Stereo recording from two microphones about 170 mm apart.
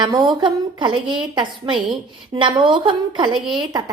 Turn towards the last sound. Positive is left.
turn(degrees=-25)  # may be behind; listen again after turning